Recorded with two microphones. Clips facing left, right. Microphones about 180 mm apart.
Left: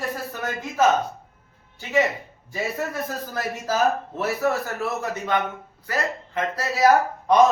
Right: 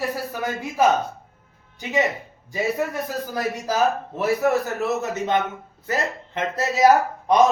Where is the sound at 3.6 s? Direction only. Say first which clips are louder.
Left 1 dB; 15° right (ahead or behind).